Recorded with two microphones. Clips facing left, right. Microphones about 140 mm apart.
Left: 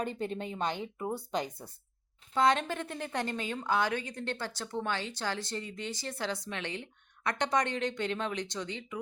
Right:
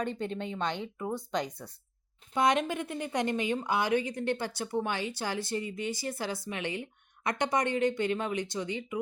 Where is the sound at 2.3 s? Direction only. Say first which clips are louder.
Right 1 dB; 15° right (ahead or behind).